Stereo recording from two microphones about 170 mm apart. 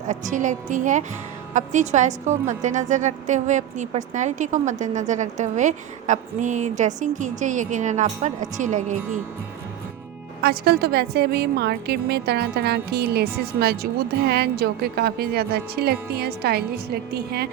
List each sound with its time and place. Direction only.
0.1 s a woman's voice: 45° right (ahead or behind)
10.4 s a woman's voice: 65° right (ahead or behind)